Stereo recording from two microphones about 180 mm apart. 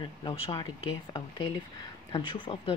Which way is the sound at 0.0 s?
25° left (ahead or behind).